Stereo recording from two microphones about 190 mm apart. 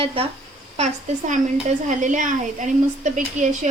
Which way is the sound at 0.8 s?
40° right (ahead or behind).